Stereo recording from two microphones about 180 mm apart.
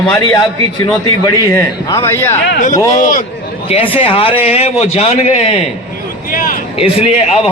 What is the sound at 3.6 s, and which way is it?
A man's voice, 30° left (ahead or behind).